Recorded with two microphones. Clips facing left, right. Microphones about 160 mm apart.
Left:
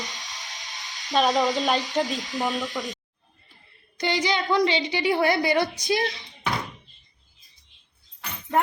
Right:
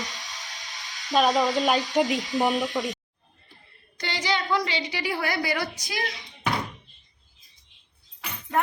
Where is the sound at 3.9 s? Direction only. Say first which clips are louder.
Left 4 dB; 15° left (ahead or behind).